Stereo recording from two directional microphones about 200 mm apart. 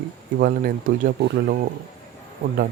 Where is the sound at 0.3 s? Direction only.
45° right (ahead or behind).